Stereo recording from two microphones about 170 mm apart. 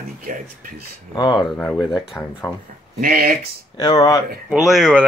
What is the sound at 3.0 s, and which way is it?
Speech, 60° right (ahead or behind).